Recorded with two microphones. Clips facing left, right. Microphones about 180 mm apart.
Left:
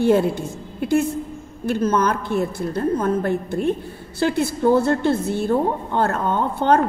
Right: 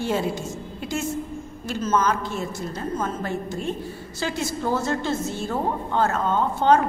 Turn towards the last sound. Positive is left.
turn(degrees=55)  # may be behind; listen again after turning